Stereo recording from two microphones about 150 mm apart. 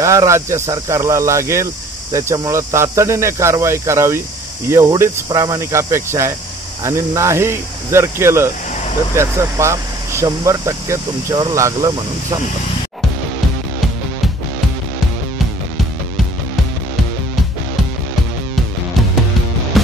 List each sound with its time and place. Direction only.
0.0 s speech: 20° right (ahead or behind)